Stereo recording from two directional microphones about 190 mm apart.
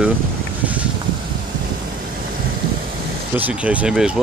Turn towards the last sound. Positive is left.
turn(degrees=-5)  # may be behind; listen again after turning